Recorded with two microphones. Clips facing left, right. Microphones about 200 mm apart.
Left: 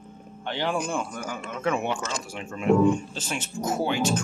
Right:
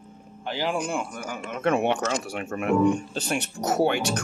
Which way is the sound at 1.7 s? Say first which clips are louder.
Right 4 dB; 55° right (ahead or behind).